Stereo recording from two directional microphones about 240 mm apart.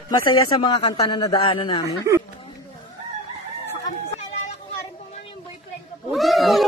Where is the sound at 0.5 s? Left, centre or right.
Centre.